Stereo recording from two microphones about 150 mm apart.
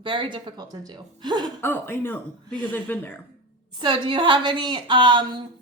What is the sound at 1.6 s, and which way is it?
Speech, 15° left (ahead or behind).